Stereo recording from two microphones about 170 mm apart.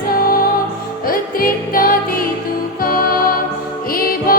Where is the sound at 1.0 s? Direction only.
55° left (ahead or behind).